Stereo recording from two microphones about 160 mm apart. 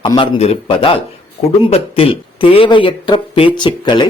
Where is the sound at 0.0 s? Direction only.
35° left (ahead or behind).